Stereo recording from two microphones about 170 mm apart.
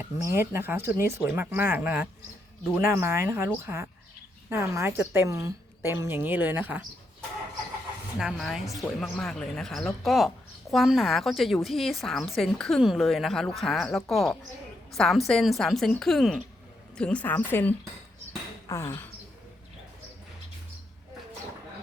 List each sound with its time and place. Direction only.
0.0 s a woman's voice: 15° right (ahead or behind)
8.2 s a woman's voice: centre (ahead or behind); by 19.0 s 15° left (ahead or behind)